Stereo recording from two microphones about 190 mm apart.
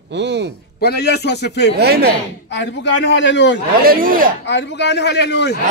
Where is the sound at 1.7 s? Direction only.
55° right (ahead or behind).